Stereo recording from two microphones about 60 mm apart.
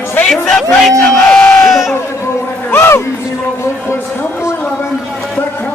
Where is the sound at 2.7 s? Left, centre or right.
Left.